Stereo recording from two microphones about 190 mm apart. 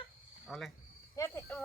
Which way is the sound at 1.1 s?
15° left (ahead or behind).